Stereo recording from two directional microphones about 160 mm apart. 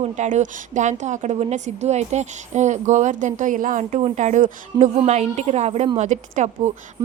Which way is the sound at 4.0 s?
45° right (ahead or behind).